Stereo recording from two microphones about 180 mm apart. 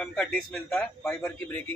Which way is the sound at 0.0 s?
5° left (ahead or behind).